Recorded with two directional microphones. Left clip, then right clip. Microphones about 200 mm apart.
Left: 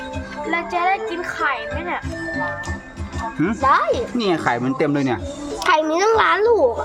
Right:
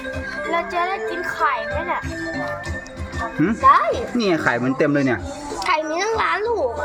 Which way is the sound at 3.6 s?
45° left (ahead or behind).